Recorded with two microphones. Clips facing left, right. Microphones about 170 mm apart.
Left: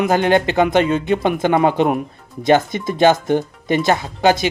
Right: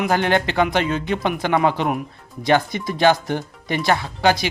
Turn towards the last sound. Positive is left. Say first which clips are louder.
# left 3 dB
turn(degrees=20)  # may be behind; listen again after turning